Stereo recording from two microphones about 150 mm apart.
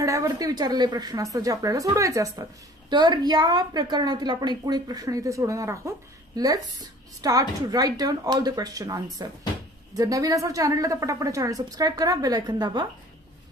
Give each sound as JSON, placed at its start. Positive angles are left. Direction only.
{"t": 0.0, "sound": "a woman's voice", "side_deg": -20}